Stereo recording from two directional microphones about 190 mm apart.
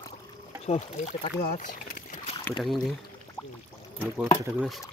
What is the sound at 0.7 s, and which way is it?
Speech, 35° left (ahead or behind).